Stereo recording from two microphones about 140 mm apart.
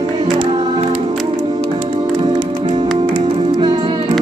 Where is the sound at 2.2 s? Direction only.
35° right (ahead or behind).